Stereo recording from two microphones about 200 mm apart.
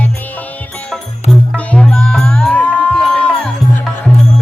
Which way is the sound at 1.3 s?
5° left (ahead or behind).